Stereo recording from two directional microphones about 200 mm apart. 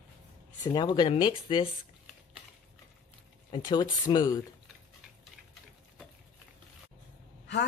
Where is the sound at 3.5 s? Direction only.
20° left (ahead or behind).